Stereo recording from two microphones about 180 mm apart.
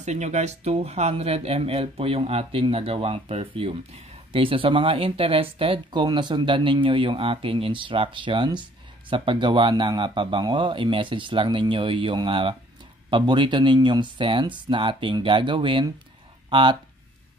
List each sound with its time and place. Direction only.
0.0 s speech: 40° right (ahead or behind)